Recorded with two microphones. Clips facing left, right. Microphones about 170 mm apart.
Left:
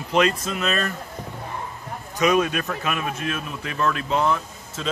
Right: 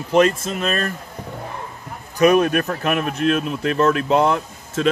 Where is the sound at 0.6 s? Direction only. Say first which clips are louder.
Right 2 dB; 50° right (ahead or behind).